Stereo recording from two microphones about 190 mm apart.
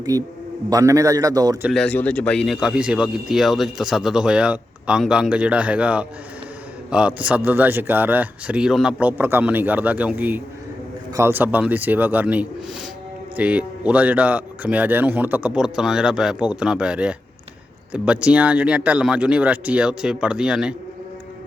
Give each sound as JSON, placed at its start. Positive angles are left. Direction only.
{"t": 0.1, "sound": "a man's voice", "side_deg": -20}
{"t": 1.6, "sound": "speech", "side_deg": 5}